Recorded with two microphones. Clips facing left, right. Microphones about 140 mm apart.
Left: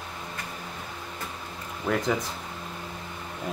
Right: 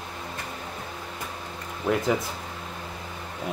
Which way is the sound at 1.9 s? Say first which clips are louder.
Right 2 dB; 10° right (ahead or behind).